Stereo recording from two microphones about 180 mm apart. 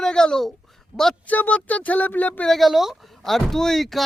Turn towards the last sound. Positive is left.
turn(degrees=0)  # may be behind; listen again after turning